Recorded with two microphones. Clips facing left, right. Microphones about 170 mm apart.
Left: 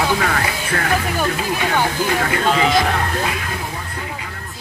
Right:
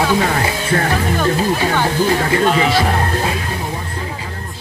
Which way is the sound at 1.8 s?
30° right (ahead or behind).